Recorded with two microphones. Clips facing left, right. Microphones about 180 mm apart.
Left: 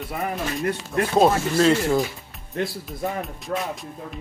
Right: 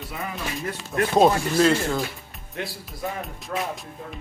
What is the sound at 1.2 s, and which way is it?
Speech, centre (ahead or behind).